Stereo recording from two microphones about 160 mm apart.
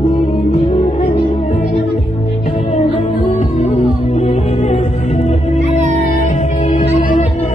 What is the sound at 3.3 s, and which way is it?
Music, 45° left (ahead or behind).